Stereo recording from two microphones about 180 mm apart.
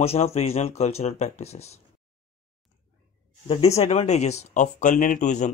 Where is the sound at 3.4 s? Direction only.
35° left (ahead or behind).